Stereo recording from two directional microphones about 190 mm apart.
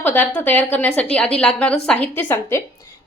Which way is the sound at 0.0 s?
10° left (ahead or behind).